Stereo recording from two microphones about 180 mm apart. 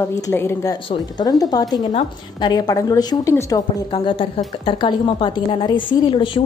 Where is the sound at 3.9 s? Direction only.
30° left (ahead or behind).